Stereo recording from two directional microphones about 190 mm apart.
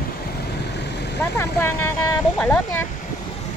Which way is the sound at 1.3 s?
15° left (ahead or behind).